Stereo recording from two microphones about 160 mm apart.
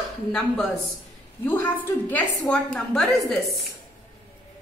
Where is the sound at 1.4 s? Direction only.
15° left (ahead or behind).